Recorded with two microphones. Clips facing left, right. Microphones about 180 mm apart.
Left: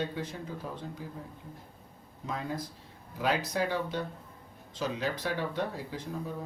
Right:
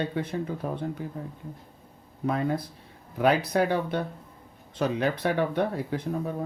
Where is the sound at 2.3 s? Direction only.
65° right (ahead or behind).